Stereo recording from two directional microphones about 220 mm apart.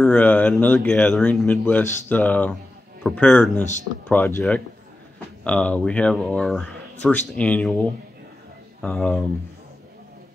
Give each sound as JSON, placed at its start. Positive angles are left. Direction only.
{"t": 0.0, "sound": "speech", "side_deg": 5}